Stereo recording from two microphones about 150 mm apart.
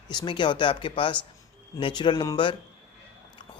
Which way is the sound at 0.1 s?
30° left (ahead or behind).